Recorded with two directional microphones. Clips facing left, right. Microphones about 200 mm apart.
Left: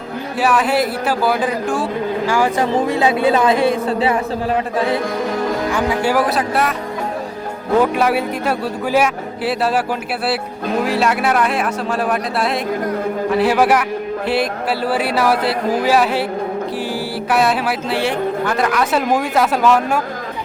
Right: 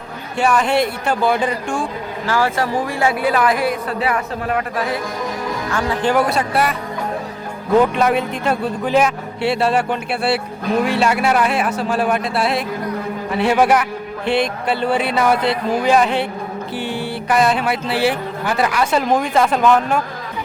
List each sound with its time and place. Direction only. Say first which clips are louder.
0.3 s speech: even; 5° left (ahead or behind)
2.2 s speech: even; 15° left (ahead or behind)
5.7 s speech: right 2 dB; 15° left (ahead or behind)
7.8 s speech: even; 5° left (ahead or behind)
10.8 s speech: left 2 dB; centre (ahead or behind)